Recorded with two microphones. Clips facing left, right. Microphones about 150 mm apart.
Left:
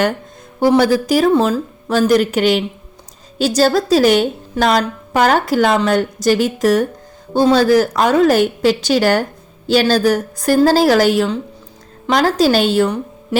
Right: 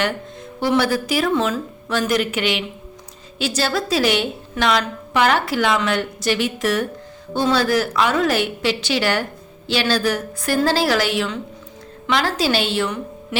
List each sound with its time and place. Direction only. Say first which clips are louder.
0.6 s a woman's voice: left 6 dB; 45° left (ahead or behind)